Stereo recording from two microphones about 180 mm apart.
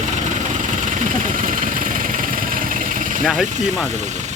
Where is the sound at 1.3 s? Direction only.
50° right (ahead or behind).